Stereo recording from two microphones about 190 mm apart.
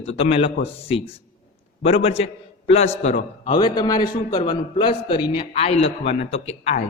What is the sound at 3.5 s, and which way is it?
A man's voice, 20° left (ahead or behind).